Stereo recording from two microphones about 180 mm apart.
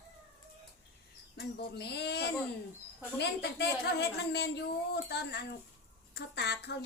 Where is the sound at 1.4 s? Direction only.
70° left (ahead or behind).